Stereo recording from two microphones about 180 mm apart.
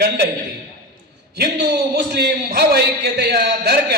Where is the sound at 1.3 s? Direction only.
65° right (ahead or behind).